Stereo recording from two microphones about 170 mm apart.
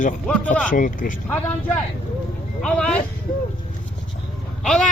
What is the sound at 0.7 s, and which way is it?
Speech, 50° left (ahead or behind).